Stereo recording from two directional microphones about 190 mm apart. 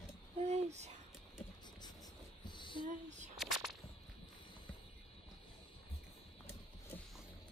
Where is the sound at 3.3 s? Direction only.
Centre (ahead or behind).